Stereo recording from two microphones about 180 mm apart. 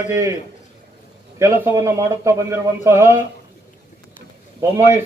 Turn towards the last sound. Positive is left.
turn(degrees=-15)  # may be behind; listen again after turning